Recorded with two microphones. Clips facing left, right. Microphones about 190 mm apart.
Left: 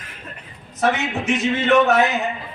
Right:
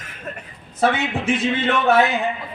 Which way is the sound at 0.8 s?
30° right (ahead or behind).